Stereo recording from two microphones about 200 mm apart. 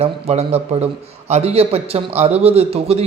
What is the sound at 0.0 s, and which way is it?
A man's voice, 30° right (ahead or behind).